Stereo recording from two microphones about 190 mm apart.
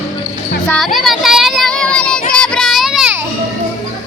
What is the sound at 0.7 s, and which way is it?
Child singing, centre (ahead or behind).